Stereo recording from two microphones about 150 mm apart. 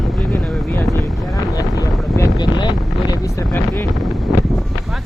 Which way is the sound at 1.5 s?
20° left (ahead or behind).